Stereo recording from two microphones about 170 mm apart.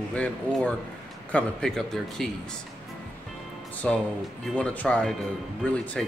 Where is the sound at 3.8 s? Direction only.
5° left (ahead or behind).